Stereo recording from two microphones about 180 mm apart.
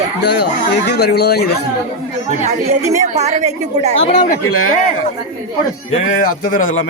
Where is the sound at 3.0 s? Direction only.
40° right (ahead or behind).